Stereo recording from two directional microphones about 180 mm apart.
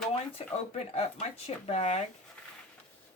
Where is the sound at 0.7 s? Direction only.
35° left (ahead or behind).